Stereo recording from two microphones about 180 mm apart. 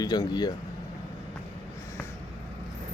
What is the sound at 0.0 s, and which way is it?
Speech, 20° left (ahead or behind).